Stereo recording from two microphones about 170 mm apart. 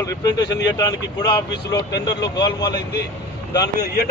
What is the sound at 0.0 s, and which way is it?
Speech, 20° left (ahead or behind).